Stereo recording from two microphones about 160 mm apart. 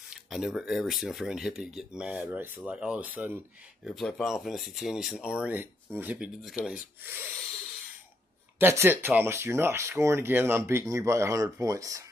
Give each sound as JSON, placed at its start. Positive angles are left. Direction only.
{"t": 0.1, "sound": "speech", "side_deg": -5}
{"t": 3.8, "sound": "speech", "side_deg": 0}
{"t": 7.0, "sound": "speech", "side_deg": -15}
{"t": 8.5, "sound": "speech", "side_deg": -15}